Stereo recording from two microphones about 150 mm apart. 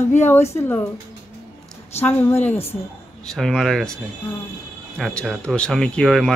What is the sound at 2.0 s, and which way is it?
Speech, 15° left (ahead or behind).